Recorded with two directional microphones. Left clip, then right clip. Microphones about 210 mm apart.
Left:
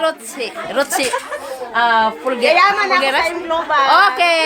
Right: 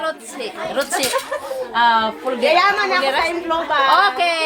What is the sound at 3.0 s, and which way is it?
Speech, 40° left (ahead or behind).